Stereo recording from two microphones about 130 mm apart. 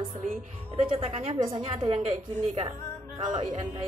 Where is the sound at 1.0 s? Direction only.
50° right (ahead or behind).